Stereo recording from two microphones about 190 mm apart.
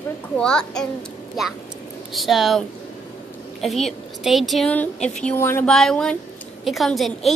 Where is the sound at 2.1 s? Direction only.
Centre (ahead or behind).